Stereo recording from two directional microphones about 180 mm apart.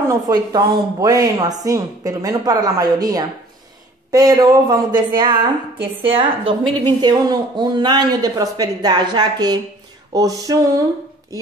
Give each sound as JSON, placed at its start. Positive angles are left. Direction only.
{"t": 0.1, "sound": "speech", "side_deg": -20}